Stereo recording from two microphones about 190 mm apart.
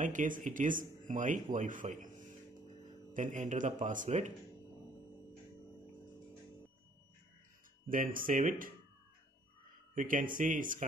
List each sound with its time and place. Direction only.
0.0 s speech: 45° right (ahead or behind)
7.9 s speech: 45° right (ahead or behind)
9.9 s speech: 45° right (ahead or behind)